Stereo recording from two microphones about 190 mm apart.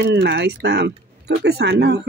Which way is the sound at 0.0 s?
65° right (ahead or behind).